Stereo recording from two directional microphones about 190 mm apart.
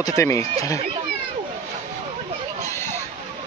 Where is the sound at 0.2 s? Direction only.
15° left (ahead or behind).